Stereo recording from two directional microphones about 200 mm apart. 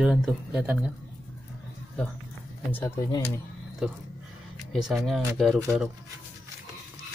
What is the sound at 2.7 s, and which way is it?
Speech, 15° left (ahead or behind).